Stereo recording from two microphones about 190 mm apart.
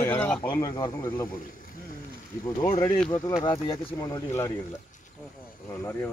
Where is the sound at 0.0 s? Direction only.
10° left (ahead or behind).